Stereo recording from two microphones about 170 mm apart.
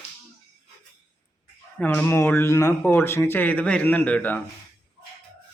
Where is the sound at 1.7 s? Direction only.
10° left (ahead or behind).